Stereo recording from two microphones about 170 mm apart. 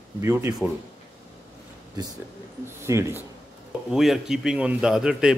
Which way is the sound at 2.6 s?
15° right (ahead or behind).